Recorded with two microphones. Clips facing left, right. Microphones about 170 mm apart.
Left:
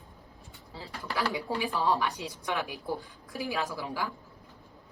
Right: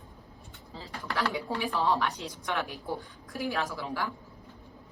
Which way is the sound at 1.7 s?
15° left (ahead or behind).